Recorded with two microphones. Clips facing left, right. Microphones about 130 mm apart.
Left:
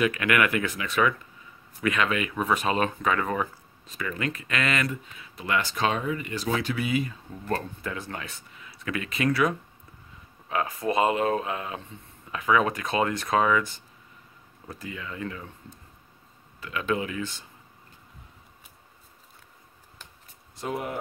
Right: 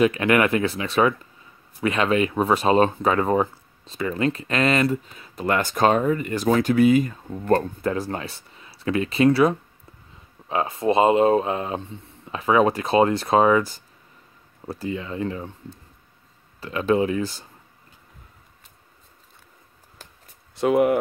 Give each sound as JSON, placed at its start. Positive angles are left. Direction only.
{"t": 0.0, "sound": "speech", "side_deg": -30}
{"t": 20.5, "sound": "speech", "side_deg": -80}